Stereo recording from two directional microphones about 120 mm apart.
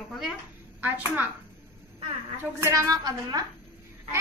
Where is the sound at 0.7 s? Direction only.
15° right (ahead or behind).